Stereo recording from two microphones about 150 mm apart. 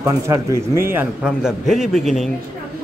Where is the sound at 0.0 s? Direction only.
20° right (ahead or behind).